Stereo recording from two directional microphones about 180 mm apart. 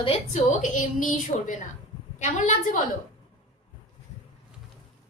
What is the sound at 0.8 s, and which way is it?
Speech, 45° left (ahead or behind).